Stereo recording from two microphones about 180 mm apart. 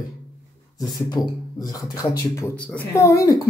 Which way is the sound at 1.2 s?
20° left (ahead or behind).